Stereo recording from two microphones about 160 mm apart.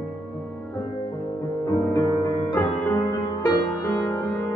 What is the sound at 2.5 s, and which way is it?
Music, 15° left (ahead or behind).